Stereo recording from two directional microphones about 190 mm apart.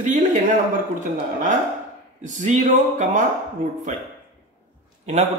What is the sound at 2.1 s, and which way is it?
A man's voice, 40° right (ahead or behind).